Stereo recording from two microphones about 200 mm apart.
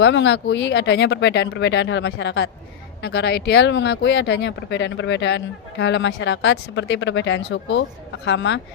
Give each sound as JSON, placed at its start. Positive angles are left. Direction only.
{"t": 0.0, "sound": "speech", "side_deg": 65}